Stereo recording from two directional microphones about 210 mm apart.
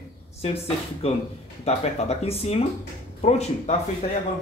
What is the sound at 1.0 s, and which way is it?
Speech, 30° left (ahead or behind).